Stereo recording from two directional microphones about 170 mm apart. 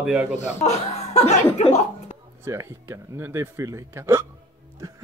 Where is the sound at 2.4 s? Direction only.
15° right (ahead or behind).